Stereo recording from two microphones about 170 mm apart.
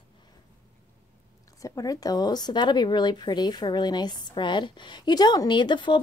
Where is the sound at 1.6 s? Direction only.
20° left (ahead or behind).